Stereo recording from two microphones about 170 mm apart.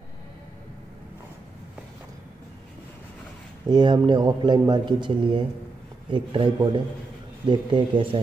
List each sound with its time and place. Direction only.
3.6 s a man's voice: 25° right (ahead or behind)